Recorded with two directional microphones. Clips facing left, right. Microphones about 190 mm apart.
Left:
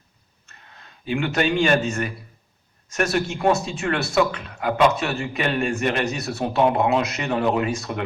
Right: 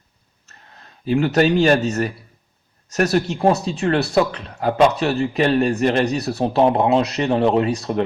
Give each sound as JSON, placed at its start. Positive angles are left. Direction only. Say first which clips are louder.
{"t": 1.0, "sound": "speech", "louder": "right 6 dB", "side_deg": -40}